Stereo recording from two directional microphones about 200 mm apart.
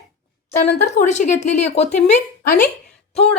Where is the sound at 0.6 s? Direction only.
35° left (ahead or behind).